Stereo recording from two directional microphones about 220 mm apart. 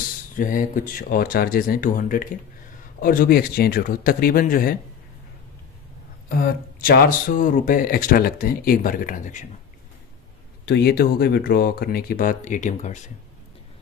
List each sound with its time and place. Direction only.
0.4 s speech: 35° left (ahead or behind)
6.2 s speech: 45° left (ahead or behind)
10.6 s speech: 45° left (ahead or behind)